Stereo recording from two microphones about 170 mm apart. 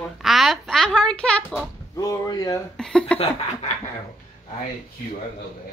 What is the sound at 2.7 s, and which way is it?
Speech, 5° left (ahead or behind).